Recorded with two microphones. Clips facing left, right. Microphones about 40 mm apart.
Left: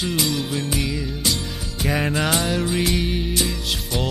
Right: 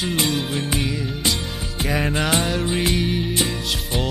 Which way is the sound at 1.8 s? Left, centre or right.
Centre.